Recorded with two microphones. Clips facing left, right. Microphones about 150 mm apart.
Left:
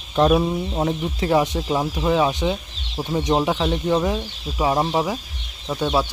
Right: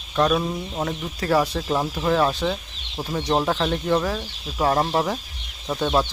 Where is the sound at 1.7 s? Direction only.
10° left (ahead or behind).